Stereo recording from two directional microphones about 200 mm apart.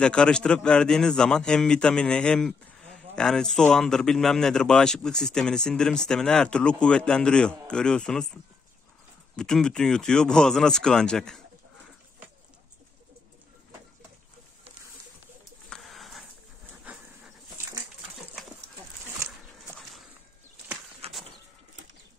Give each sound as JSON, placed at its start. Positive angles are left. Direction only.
{"t": 0.0, "sound": "a man's voice", "side_deg": 5}
{"t": 9.4, "sound": "a man's voice", "side_deg": 5}
{"t": 15.7, "sound": "a sound", "side_deg": 0}
{"t": 16.8, "sound": "dog", "side_deg": -5}
{"t": 21.0, "sound": "bird", "side_deg": -30}